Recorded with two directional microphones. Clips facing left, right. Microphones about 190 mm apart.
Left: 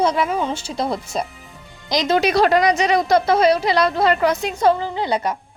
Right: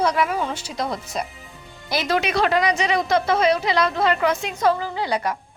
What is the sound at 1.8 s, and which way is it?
Speech, 15° left (ahead or behind).